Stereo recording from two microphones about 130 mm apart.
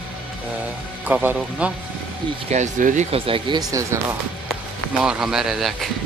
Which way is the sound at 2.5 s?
80° right.